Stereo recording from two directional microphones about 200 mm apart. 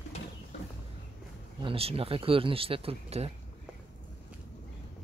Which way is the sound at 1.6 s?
25° right (ahead or behind).